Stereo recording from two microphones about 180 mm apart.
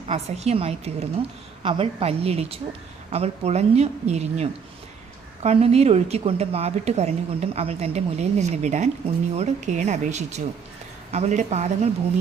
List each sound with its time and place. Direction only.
0.1 s a woman's voice: 35° right (ahead or behind)